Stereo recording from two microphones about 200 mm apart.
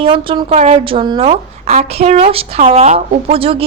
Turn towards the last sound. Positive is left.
turn(degrees=-30)  # may be behind; listen again after turning